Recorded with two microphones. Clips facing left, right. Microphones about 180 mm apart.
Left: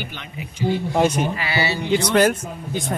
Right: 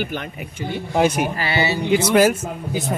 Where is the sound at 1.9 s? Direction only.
5° right (ahead or behind).